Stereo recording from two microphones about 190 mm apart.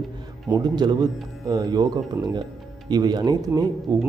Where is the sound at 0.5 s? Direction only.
20° right (ahead or behind).